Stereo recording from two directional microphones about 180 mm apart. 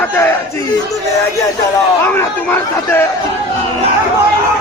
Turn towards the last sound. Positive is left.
turn(degrees=15)  # may be behind; listen again after turning